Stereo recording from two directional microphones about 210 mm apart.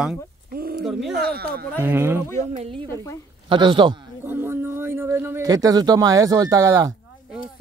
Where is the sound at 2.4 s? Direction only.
30° right (ahead or behind).